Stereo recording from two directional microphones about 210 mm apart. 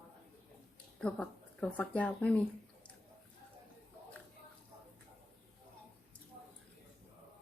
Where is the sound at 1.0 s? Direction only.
5° left (ahead or behind).